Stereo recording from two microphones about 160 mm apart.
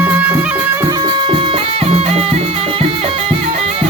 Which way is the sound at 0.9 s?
25° right (ahead or behind).